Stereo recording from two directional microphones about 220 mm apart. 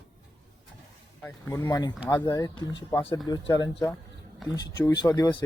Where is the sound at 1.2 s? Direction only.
10° left (ahead or behind).